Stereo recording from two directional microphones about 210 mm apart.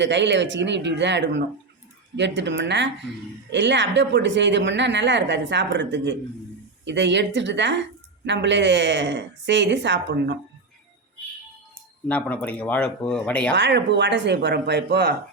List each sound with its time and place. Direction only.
0.0 s a woman's voice: 55° right (ahead or behind)
12.0 s speech: 5° left (ahead or behind)
13.6 s a woman's voice: 55° right (ahead or behind)